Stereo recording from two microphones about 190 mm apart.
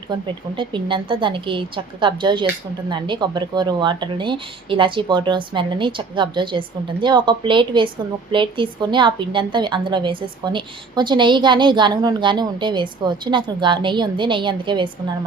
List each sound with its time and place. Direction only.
0.1 s a woman's voice: 25° right (ahead or behind)